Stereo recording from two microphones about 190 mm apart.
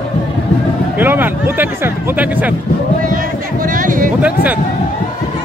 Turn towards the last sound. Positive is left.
turn(degrees=-10)  # may be behind; listen again after turning